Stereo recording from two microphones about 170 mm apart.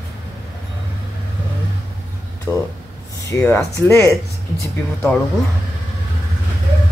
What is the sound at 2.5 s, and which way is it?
Speech, 10° left (ahead or behind).